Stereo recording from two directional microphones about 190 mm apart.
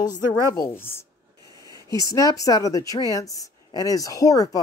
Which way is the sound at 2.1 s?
20° left (ahead or behind).